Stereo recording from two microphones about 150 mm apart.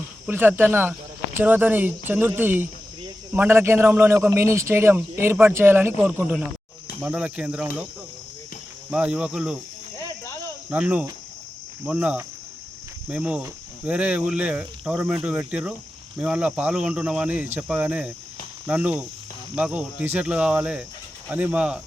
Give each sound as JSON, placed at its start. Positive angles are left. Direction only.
{"t": 0.3, "sound": "a man's voice", "side_deg": -15}
{"t": 8.9, "sound": "a man's voice", "side_deg": -5}
{"t": 10.7, "sound": "a man's voice", "side_deg": -10}